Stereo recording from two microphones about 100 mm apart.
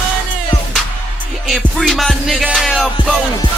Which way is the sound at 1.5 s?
Centre (ahead or behind).